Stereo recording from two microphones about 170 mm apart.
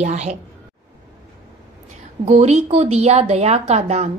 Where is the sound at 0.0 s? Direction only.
40° right (ahead or behind).